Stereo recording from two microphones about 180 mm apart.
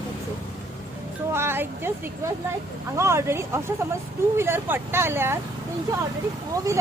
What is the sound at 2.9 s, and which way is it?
Speech, 15° right (ahead or behind).